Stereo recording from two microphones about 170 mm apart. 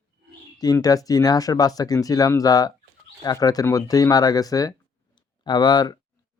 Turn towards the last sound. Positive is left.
turn(degrees=25)  # may be behind; listen again after turning